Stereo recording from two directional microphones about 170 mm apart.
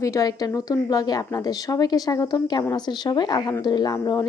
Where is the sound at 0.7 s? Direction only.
20° left (ahead or behind).